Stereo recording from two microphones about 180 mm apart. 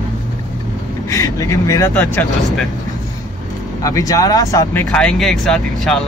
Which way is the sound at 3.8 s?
20° left (ahead or behind).